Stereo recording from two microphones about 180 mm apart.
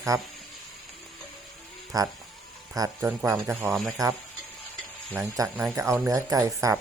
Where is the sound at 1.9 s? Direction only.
20° right (ahead or behind).